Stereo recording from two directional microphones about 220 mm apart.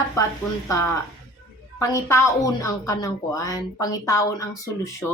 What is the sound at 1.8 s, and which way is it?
A woman's voice, 15° left (ahead or behind).